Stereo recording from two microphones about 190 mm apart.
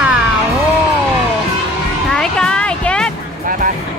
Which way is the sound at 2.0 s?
5° left (ahead or behind).